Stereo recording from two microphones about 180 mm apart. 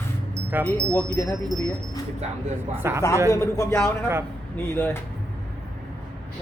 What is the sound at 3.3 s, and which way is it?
A man's voice, 15° left (ahead or behind).